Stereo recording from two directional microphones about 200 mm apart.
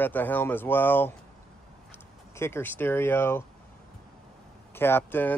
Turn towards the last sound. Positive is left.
turn(degrees=10)  # may be behind; listen again after turning